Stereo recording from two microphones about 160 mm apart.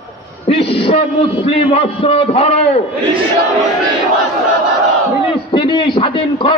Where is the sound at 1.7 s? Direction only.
40° left (ahead or behind).